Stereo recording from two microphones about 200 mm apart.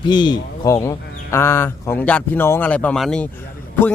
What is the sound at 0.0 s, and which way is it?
Speech, 20° left (ahead or behind).